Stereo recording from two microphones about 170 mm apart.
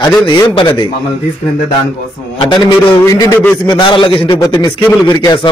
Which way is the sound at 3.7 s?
25° left (ahead or behind).